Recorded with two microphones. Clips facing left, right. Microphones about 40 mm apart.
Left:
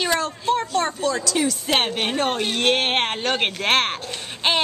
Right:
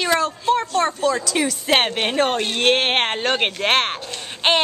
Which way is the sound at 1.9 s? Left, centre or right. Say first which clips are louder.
Right 3 dB; centre.